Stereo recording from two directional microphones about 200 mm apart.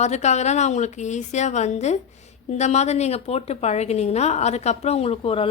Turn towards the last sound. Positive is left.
turn(degrees=30)  # may be behind; listen again after turning